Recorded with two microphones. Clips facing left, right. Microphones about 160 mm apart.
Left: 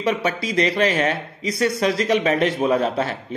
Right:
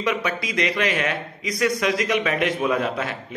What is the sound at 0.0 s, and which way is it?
A man's voice, 30° left (ahead or behind).